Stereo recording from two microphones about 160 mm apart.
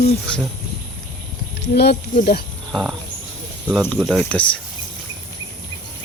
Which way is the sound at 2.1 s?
65° left (ahead or behind).